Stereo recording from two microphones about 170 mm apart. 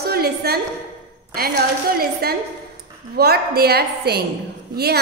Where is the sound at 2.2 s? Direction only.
70° right (ahead or behind).